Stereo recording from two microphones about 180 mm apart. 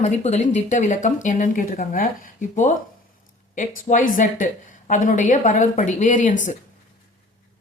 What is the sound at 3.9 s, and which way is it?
A woman's voice, 45° left (ahead or behind).